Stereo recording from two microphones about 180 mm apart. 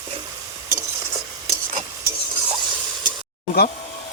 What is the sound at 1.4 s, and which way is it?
Stir, 35° right (ahead or behind).